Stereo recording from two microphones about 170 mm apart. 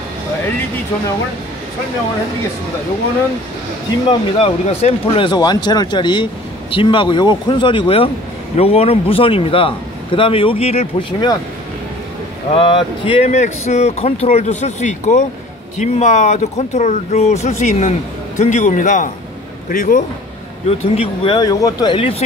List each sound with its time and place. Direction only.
4.1 s speech: 35° left (ahead or behind)
12.5 s a man's voice: 30° left (ahead or behind); by 20.0 s 50° left (ahead or behind)
20.6 s speech: 35° left (ahead or behind)
21.2 s speech: 25° left (ahead or behind)